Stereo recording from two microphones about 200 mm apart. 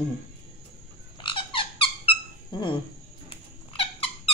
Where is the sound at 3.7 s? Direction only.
30° left (ahead or behind).